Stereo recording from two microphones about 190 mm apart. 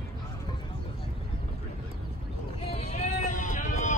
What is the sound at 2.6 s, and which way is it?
Vehicle, 35° left (ahead or behind).